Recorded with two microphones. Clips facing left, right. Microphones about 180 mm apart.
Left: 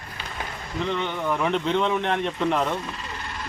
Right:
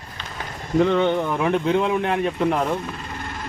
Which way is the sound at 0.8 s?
50° right (ahead or behind).